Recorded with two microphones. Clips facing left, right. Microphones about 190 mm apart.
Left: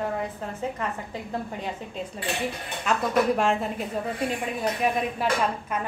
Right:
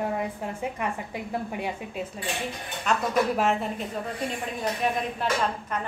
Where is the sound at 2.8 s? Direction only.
Centre (ahead or behind).